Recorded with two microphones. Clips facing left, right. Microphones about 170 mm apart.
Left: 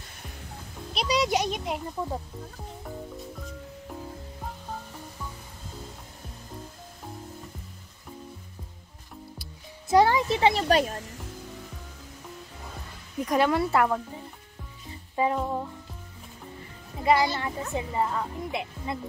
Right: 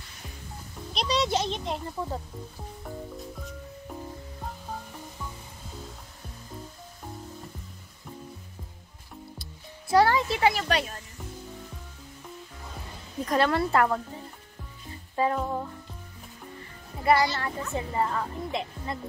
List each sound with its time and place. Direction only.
0.9 s a child's voice: 10° left (ahead or behind)
2.8 s music: centre (ahead or behind)
9.4 s music: 15° left (ahead or behind)
10.7 s speech: 40° left (ahead or behind)
13.2 s speech: 10° left (ahead or behind)
14.9 s music: 15° left (ahead or behind)
17.0 s speech: 15° left (ahead or behind)